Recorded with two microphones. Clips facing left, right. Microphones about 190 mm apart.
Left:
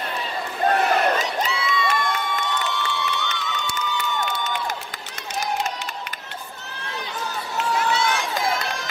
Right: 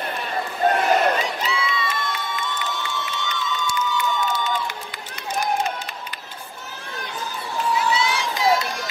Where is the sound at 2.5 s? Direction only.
65° left (ahead or behind).